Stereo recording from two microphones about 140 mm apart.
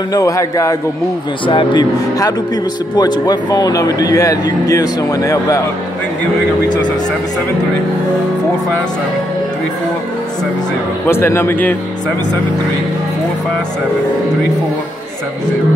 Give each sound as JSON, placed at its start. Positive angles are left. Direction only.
{"t": 0.1, "sound": "speech", "side_deg": 20}
{"t": 1.5, "sound": "speech", "side_deg": 35}
{"t": 11.1, "sound": "speech", "side_deg": 15}